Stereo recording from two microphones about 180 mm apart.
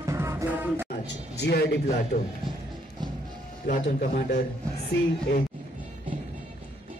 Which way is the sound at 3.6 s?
50° left (ahead or behind).